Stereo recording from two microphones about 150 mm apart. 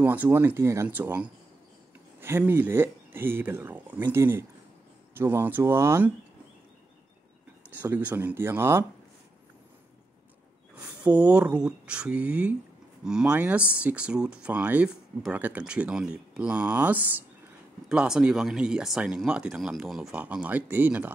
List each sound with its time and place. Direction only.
0.0 s speech: 10° right (ahead or behind)
7.8 s speech: 10° right (ahead or behind)
11.1 s speech: 10° right (ahead or behind)